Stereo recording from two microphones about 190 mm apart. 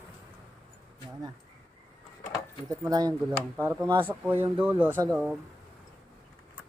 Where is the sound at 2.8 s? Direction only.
20° right (ahead or behind).